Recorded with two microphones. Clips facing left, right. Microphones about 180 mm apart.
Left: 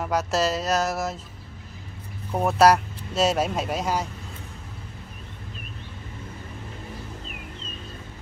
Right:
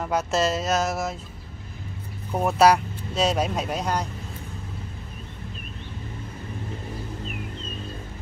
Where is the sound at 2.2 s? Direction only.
Centre (ahead or behind).